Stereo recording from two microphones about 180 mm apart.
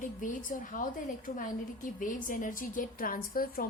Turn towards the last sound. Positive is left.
turn(degrees=50)  # may be behind; listen again after turning